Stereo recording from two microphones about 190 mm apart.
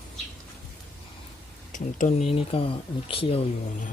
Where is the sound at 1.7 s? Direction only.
45° left (ahead or behind).